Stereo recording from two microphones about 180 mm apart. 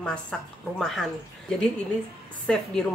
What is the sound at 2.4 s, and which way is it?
Speech, 5° left (ahead or behind).